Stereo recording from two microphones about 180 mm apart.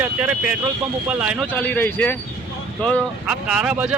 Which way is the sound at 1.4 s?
10° left (ahead or behind).